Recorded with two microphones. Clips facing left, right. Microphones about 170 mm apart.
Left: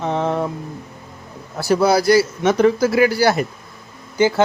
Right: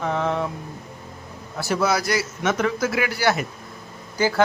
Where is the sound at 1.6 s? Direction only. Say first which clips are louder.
Left 6 dB; 35° left (ahead or behind).